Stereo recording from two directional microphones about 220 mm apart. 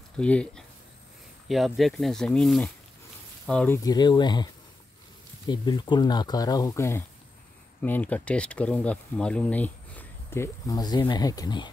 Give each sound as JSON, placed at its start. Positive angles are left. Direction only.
{"t": 0.2, "sound": "speech", "side_deg": 5}
{"t": 5.5, "sound": "speech", "side_deg": 20}